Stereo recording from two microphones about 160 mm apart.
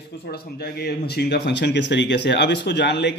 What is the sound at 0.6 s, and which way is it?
Speech, 90° left.